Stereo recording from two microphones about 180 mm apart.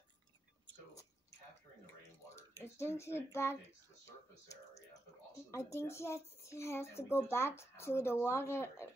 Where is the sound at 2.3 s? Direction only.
15° left (ahead or behind).